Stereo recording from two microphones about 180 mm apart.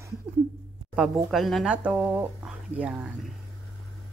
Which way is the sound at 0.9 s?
Centre (ahead or behind).